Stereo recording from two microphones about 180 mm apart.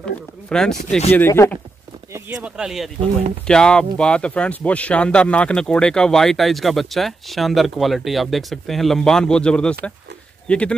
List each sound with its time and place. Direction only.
0.0 s speech: 5° left (ahead or behind)
0.7 s speech: 40° left (ahead or behind)
1.1 s speech: 15° left (ahead or behind)
2.1 s speech: 10° right (ahead or behind)